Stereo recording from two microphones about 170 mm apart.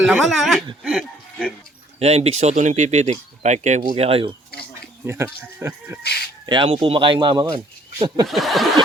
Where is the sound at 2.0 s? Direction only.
40° right (ahead or behind).